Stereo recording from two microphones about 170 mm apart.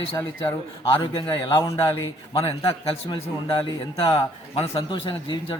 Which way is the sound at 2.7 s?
35° left (ahead or behind).